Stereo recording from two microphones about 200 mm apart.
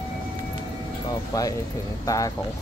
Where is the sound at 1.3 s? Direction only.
15° left (ahead or behind).